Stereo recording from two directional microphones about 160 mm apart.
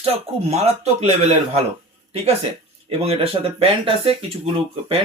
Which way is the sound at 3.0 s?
40° right (ahead or behind).